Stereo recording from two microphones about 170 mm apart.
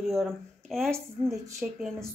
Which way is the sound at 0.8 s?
15° right (ahead or behind).